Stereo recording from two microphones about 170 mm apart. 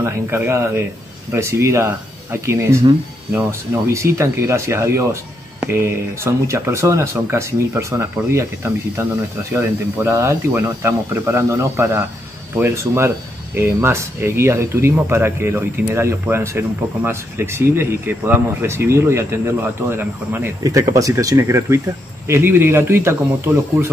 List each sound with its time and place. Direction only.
0.0 s speech: 15° right (ahead or behind)
3.9 s speech: 15° right (ahead or behind)